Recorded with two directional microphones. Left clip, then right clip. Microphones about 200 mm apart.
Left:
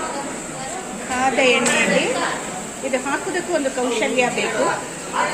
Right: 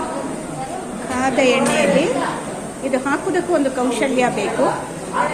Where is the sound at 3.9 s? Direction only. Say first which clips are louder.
Left 1 dB; centre (ahead or behind).